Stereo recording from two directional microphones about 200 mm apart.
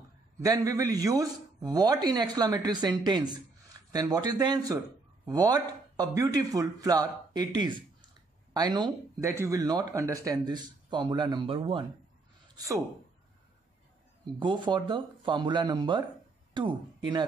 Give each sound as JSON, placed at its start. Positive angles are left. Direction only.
{"t": 0.4, "sound": "speech", "side_deg": -15}
{"t": 12.5, "sound": "speech", "side_deg": -15}
{"t": 14.4, "sound": "speech", "side_deg": -25}